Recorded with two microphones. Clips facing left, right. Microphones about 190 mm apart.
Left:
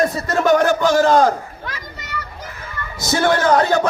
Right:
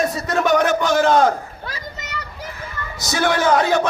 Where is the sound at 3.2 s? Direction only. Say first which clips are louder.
Left 1 dB; centre (ahead or behind).